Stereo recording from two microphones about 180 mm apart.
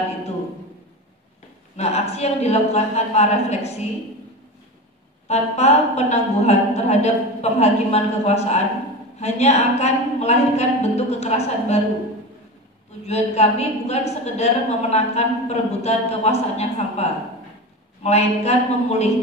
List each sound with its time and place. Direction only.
1.8 s a woman's voice: 35° left (ahead or behind)
5.3 s a woman's voice: 35° left (ahead or behind)
13.0 s a woman's voice: 35° left (ahead or behind)